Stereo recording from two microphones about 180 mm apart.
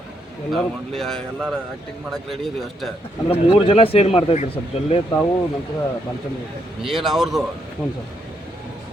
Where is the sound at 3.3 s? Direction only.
30° left (ahead or behind).